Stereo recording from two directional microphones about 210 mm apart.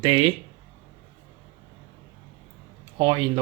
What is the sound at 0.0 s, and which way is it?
Speech, 25° right (ahead or behind).